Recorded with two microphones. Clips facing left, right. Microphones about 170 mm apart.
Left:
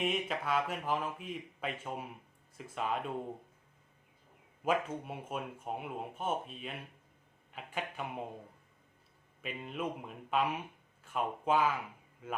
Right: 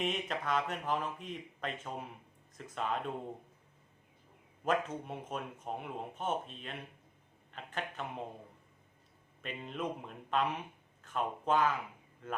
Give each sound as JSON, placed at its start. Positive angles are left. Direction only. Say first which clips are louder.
{"t": 0.0, "sound": "speech", "louder": "left 1 dB", "side_deg": 5}
{"t": 4.6, "sound": "speech", "louder": "even", "side_deg": 10}
{"t": 9.4, "sound": "speech", "louder": "left 1 dB", "side_deg": 5}